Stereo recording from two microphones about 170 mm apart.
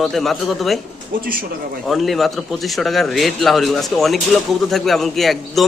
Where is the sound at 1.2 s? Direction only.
55° right (ahead or behind).